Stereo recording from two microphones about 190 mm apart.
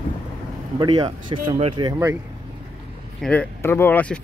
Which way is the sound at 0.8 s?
25° right (ahead or behind).